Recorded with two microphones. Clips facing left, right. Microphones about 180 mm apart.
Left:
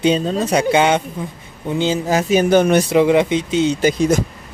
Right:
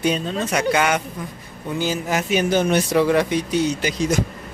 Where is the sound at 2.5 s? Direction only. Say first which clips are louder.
Left 6 dB; 60° left (ahead or behind).